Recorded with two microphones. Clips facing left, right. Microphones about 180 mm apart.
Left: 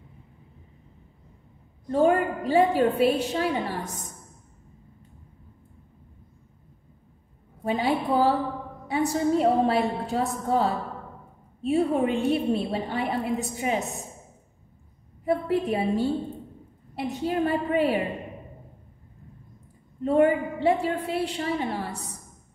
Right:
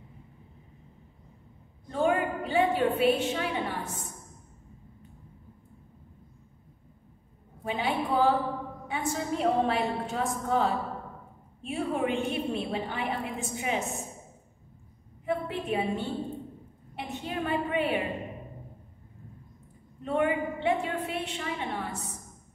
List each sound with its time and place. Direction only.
1.9 s a woman's voice: 40° left (ahead or behind)
7.6 s a woman's voice: 35° left (ahead or behind)
15.2 s a woman's voice: 40° left (ahead or behind)
20.1 s a woman's voice: 35° left (ahead or behind)